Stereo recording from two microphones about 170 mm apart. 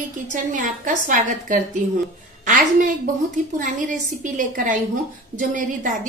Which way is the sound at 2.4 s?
50° right (ahead or behind).